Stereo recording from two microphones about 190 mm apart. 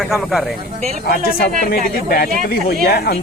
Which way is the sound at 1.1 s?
55° left (ahead or behind).